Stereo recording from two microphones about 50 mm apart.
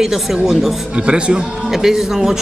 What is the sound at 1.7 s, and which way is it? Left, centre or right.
Speech, centre.